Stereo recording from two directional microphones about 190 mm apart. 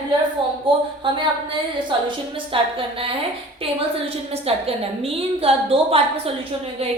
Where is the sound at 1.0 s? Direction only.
25° right (ahead or behind).